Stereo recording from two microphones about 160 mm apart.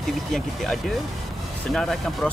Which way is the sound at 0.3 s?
Centre (ahead or behind).